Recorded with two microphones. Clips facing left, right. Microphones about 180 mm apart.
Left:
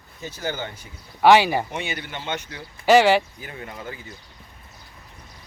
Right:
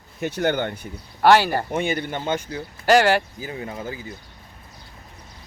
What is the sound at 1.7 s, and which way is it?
Speech, 50° right (ahead or behind).